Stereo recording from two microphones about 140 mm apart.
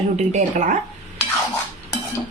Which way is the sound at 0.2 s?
60° right (ahead or behind).